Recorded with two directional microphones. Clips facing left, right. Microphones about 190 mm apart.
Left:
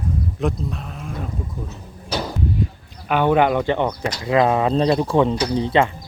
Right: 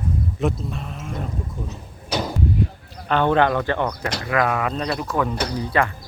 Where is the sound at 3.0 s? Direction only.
10° left (ahead or behind).